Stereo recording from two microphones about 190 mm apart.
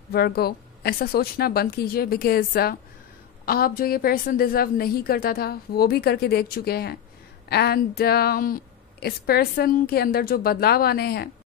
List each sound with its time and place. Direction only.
0.1 s speech: 55° left (ahead or behind)